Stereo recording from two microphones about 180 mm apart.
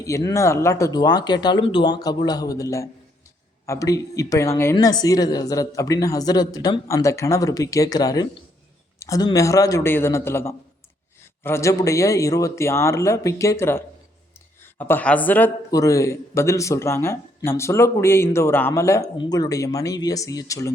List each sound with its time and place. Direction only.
0.0 s speech: 20° left (ahead or behind)